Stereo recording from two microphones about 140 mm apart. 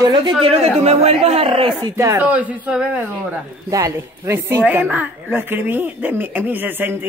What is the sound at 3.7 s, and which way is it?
A woman's voice, 20° right (ahead or behind).